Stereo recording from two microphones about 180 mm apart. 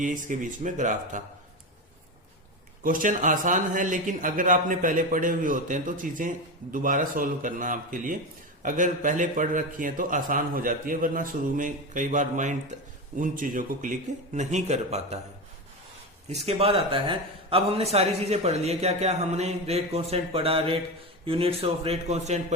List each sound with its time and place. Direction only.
0.0 s a man's voice: 45° right (ahead or behind)
2.8 s a man's voice: 50° right (ahead or behind)
16.5 s a man's voice: 35° right (ahead or behind)